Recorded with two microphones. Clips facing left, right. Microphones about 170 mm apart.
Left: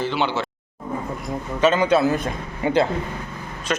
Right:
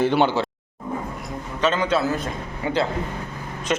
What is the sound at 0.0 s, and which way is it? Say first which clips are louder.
Speech: right 4 dB; 55° right (ahead or behind).